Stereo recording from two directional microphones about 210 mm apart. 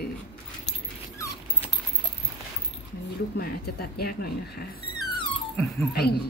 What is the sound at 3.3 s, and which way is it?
Speech, 50° left (ahead or behind).